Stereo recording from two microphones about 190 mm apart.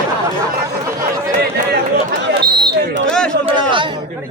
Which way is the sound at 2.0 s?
55° right (ahead or behind).